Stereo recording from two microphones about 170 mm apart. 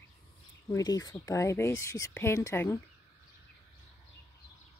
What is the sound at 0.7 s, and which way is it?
Speech, 20° left (ahead or behind).